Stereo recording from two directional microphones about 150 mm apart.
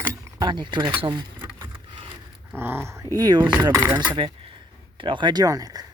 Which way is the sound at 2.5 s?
15° right (ahead or behind).